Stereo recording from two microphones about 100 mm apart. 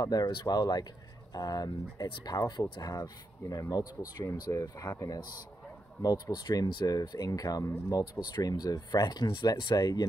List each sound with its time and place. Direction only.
0.0 s speech: 40° left (ahead or behind)